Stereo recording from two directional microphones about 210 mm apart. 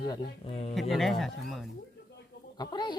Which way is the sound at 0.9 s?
Centre (ahead or behind).